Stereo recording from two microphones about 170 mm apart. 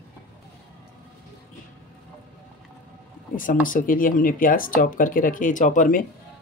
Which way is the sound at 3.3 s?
55° left (ahead or behind).